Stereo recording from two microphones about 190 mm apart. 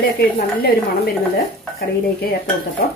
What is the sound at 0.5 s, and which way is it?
Speech, 50° left (ahead or behind).